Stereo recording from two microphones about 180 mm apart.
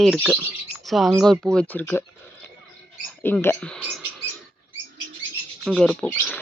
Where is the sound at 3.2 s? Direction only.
10° left (ahead or behind).